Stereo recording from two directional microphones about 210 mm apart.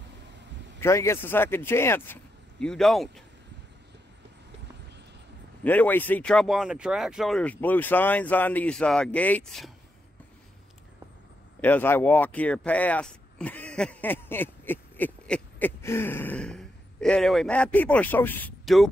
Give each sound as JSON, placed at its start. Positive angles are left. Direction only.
{"t": 0.7, "sound": "speech", "side_deg": 15}
{"t": 5.6, "sound": "speech", "side_deg": 10}
{"t": 11.6, "sound": "speech", "side_deg": 10}